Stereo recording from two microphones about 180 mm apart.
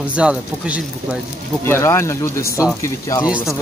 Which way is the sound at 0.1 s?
5° right (ahead or behind).